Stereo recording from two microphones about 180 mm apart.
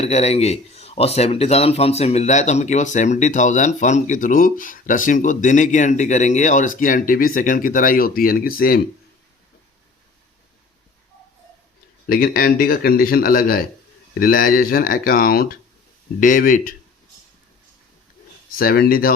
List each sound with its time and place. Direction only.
0.0 s a man's voice: 35° left (ahead or behind); by 8.8 s 55° left (ahead or behind)
12.0 s a man's voice: 55° left (ahead or behind)
18.5 s a man's voice: 55° left (ahead or behind)